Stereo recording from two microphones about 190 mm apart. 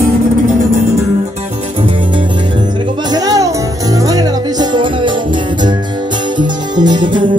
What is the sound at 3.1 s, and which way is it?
Music, 20° right (ahead or behind).